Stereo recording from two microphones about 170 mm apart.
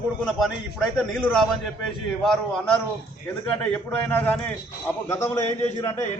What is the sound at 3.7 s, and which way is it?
A man's voice, 10° left (ahead or behind).